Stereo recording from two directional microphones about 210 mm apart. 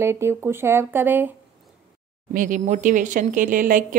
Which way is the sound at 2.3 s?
40° right (ahead or behind).